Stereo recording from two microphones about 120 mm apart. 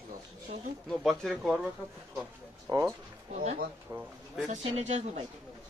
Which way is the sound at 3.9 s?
20° right (ahead or behind).